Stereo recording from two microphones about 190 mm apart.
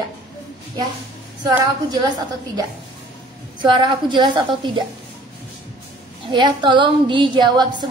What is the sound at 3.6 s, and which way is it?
A woman's voice, 25° right (ahead or behind).